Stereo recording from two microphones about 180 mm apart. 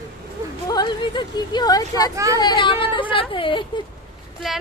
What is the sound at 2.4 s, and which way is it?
A woman's voice, 25° left (ahead or behind).